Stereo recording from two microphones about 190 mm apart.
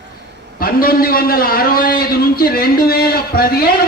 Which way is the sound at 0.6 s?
50° left (ahead or behind).